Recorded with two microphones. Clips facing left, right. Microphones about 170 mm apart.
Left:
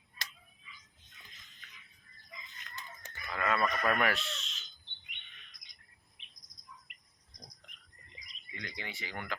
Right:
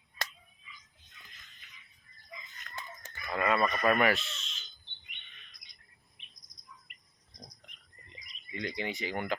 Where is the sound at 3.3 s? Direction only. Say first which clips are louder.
Right 3 dB; 15° right (ahead or behind); by 4.7 s centre (ahead or behind).